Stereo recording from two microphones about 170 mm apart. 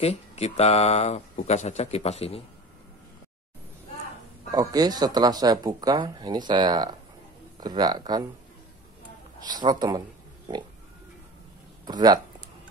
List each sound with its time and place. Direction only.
0.0 s speech: 40° left (ahead or behind)
4.5 s speech: 20° right (ahead or behind)
9.5 s speech: 25° right (ahead or behind)
11.8 s speech: 25° right (ahead or behind)